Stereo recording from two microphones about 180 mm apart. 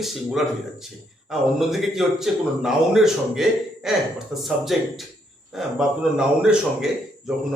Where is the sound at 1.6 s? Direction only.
Centre (ahead or behind).